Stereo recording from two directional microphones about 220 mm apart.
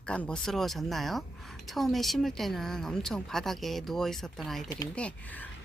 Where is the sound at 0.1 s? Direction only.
5° left (ahead or behind).